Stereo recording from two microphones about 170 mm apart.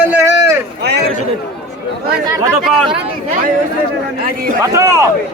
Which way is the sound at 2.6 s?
Centre (ahead or behind).